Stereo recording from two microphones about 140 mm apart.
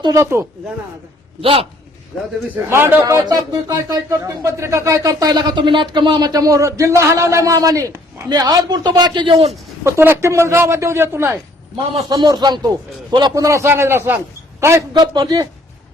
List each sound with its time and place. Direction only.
0.0 s speech: 20° right (ahead or behind)
1.4 s a man's voice: 40° right (ahead or behind)
2.6 s speech: 15° right (ahead or behind); by 9.5 s 40° right (ahead or behind)
9.8 s speech: 20° right (ahead or behind)
12.0 s a man's voice: 30° right (ahead or behind)
14.9 s a man's voice: 30° right (ahead or behind)